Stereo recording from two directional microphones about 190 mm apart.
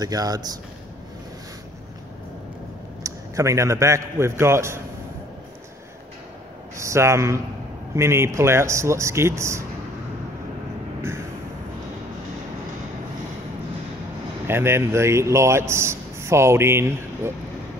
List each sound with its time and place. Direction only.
0.0 s speech: 20° right (ahead or behind)
3.0 s a man's voice: 15° right (ahead or behind)
6.8 s a man's voice: 15° right (ahead or behind)
11.0 s vehicle: 15° right (ahead or behind)
14.5 s a man's voice: 15° right (ahead or behind)